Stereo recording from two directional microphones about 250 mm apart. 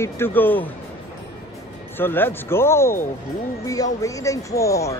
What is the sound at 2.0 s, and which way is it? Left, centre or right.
Speech, centre.